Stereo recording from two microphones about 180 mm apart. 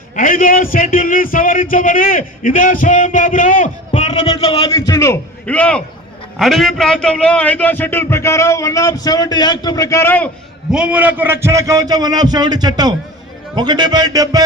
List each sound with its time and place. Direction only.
0.2 s a man's voice: 50° left (ahead or behind)
4.4 s a man's voice: 25° left (ahead or behind)
10.7 s a man's voice: 5° right (ahead or behind)